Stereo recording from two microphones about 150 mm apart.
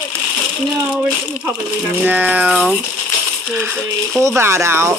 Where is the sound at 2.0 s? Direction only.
10° right (ahead or behind).